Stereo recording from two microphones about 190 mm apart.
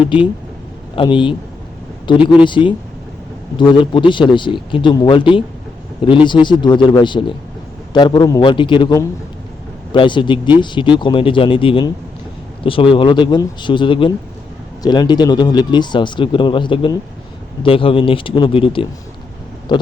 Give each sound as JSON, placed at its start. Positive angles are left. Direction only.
{"t": 0.9, "sound": "speech", "side_deg": 25}